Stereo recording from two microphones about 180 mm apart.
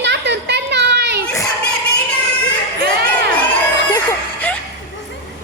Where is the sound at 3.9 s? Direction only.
10° left (ahead or behind).